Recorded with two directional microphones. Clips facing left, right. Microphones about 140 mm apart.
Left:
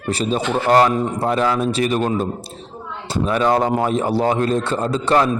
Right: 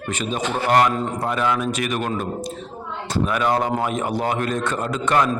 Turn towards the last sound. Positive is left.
turn(degrees=30)  # may be behind; listen again after turning